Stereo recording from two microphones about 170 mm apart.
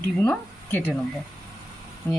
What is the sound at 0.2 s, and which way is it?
Speech, 10° left (ahead or behind).